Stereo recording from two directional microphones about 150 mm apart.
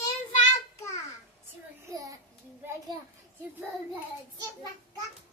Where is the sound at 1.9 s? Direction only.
25° right (ahead or behind).